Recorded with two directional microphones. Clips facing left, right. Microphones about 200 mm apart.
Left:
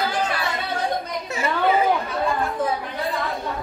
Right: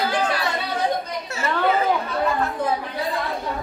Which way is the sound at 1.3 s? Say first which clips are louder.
Left 1 dB; 15° left (ahead or behind).